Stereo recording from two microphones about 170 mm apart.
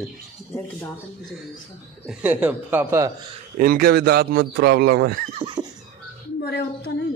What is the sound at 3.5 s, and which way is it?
A man's voice, 60° right (ahead or behind).